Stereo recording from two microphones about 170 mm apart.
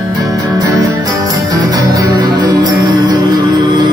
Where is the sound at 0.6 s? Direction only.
20° right (ahead or behind).